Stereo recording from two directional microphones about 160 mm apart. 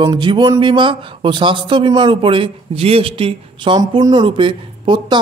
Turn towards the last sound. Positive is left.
turn(degrees=-30)  # may be behind; listen again after turning